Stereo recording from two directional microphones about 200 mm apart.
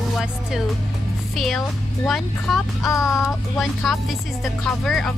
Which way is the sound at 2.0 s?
Centre (ahead or behind).